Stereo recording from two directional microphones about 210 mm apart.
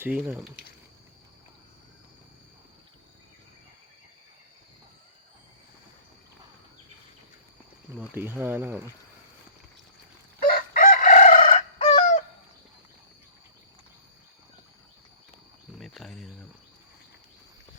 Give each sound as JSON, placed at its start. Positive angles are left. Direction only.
{"t": 0.0, "sound": "speech", "side_deg": -10}
{"t": 7.9, "sound": "speech", "side_deg": -10}
{"t": 10.4, "sound": "chicken", "side_deg": 40}
{"t": 15.8, "sound": "cricket", "side_deg": 0}